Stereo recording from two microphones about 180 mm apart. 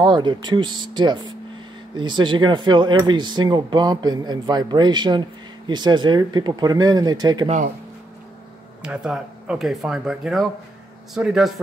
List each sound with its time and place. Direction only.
0.0 s speech: 25° right (ahead or behind)
7.4 s speech: 45° right (ahead or behind)
8.8 s speech: 5° right (ahead or behind)